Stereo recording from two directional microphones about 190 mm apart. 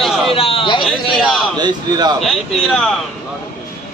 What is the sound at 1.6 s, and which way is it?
Speech, 20° right (ahead or behind).